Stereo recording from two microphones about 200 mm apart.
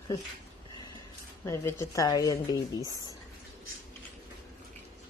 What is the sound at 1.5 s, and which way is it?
Speech, 15° left (ahead or behind).